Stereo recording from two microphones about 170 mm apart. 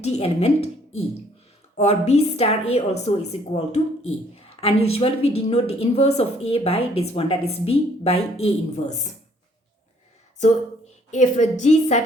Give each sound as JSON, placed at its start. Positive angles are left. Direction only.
{"t": 0.0, "sound": "a woman's voice", "side_deg": 40}
{"t": 11.1, "sound": "a woman's voice", "side_deg": 45}